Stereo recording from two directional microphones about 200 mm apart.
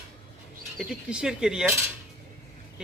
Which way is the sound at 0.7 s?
5° right (ahead or behind).